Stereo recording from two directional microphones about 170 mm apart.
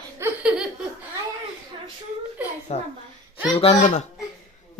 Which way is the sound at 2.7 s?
40° left (ahead or behind).